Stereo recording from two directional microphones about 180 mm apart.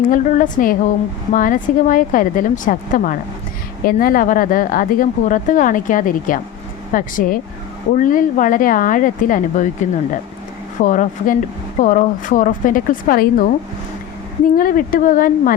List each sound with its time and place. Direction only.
0.1 s speech: 45° left (ahead or behind)
14.5 s speech: 50° left (ahead or behind)